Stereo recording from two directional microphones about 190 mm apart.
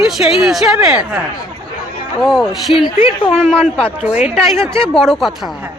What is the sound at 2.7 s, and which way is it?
Speech, 30° left (ahead or behind).